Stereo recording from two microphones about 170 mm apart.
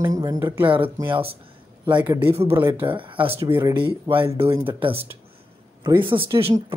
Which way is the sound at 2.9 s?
30° right (ahead or behind).